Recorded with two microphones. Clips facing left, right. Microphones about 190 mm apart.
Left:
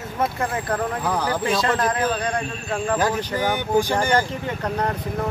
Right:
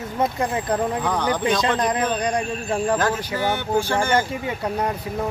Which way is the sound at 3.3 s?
15° left (ahead or behind).